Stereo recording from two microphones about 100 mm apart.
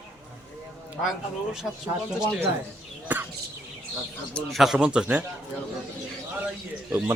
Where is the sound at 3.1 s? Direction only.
15° right (ahead or behind).